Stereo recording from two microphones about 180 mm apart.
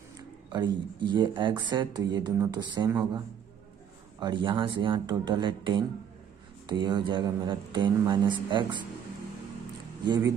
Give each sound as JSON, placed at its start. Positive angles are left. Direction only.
{"t": 0.5, "sound": "speech", "side_deg": -25}
{"t": 4.2, "sound": "speech", "side_deg": -25}
{"t": 10.0, "sound": "speech", "side_deg": -25}